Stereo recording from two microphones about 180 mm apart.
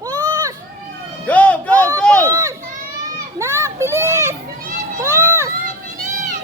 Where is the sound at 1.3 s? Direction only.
5° left (ahead or behind).